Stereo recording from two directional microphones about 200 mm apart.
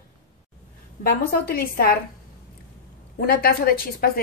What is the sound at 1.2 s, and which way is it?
Speech, 50° left (ahead or behind).